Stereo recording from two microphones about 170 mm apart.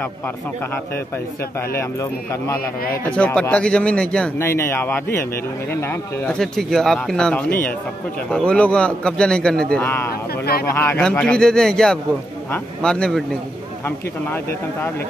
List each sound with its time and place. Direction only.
1.8 s speech: 15° left (ahead or behind)
10.4 s speech: 65° left (ahead or behind)
10.7 s speech: 10° left (ahead or behind)